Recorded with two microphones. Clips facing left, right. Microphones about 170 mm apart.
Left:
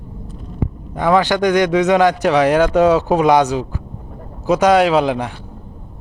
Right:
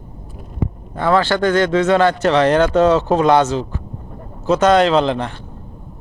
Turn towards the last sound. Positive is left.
turn(degrees=10)  # may be behind; listen again after turning